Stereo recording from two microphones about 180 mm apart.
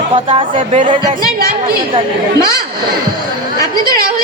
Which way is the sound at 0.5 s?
40° right (ahead or behind).